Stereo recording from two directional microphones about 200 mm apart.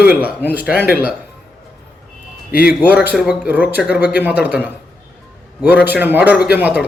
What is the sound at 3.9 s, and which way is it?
Speech, 55° left (ahead or behind).